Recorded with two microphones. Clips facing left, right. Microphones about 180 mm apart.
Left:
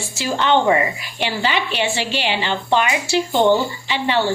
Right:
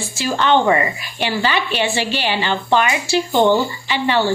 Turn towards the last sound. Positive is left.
turn(degrees=20)  # may be behind; listen again after turning